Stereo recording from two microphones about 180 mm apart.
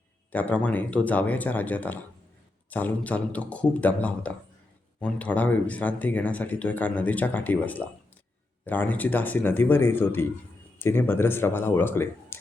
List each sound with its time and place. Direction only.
0.3 s speech: 10° left (ahead or behind)